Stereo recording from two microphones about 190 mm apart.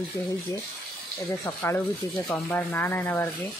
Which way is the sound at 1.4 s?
15° left (ahead or behind).